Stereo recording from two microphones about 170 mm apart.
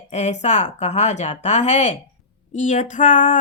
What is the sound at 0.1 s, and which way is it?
Speech, 40° left (ahead or behind).